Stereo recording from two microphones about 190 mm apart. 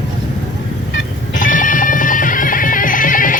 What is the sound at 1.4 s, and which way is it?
Music, 45° left (ahead or behind).